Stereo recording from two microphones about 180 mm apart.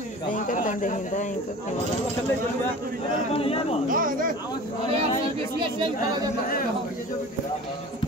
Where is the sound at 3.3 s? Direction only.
30° left (ahead or behind).